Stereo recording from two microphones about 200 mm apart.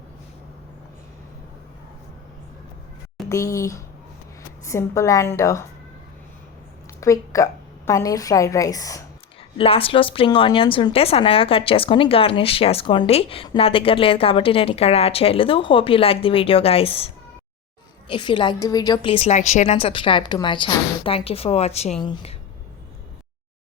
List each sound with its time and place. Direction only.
3.2 s a woman's voice: 15° left (ahead or behind)
7.0 s a woman's voice: 15° left (ahead or behind)
9.6 s a woman's voice: 30° left (ahead or behind)
18.1 s a woman's voice: 25° left (ahead or behind)